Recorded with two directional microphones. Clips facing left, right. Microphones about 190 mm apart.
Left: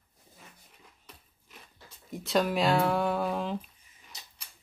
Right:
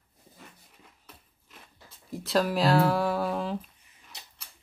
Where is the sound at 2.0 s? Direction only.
Centre (ahead or behind).